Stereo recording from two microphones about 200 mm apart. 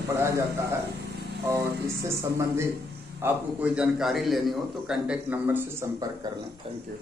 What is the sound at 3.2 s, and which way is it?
A man's voice, 10° right (ahead or behind).